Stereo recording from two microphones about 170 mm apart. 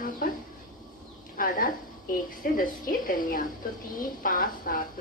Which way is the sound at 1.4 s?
55° left (ahead or behind).